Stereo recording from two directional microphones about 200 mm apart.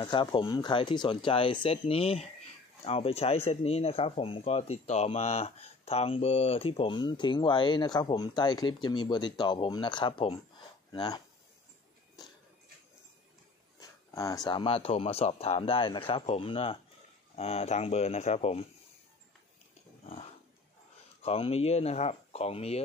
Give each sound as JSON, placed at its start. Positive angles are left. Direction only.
{"t": 0.0, "sound": "speech", "side_deg": 20}
{"t": 13.7, "sound": "speech", "side_deg": 15}
{"t": 21.2, "sound": "speech", "side_deg": 30}